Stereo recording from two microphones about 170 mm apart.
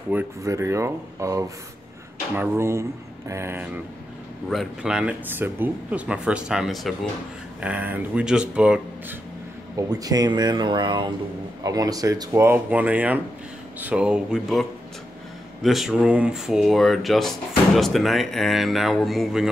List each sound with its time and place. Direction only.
0.1 s speech: 15° right (ahead or behind)
9.8 s speech: 20° right (ahead or behind); by 19.5 s centre (ahead or behind)